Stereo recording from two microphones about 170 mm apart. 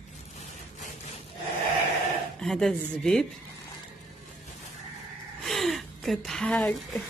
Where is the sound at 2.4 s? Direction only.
Centre (ahead or behind).